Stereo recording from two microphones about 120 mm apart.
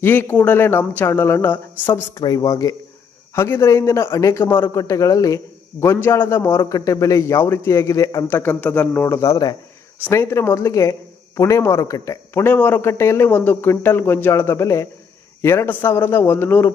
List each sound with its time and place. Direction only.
0.0 s a man's voice: 15° left (ahead or behind)
2.1 s a man's voice: 30° left (ahead or behind)
8.4 s a man's voice: 15° left (ahead or behind)
12.3 s a man's voice: 15° left (ahead or behind)